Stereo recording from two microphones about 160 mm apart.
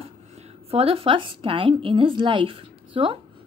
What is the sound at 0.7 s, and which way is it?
A woman's voice, 35° right (ahead or behind).